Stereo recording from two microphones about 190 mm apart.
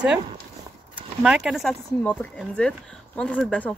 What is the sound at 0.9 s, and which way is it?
Speech, 5° right (ahead or behind).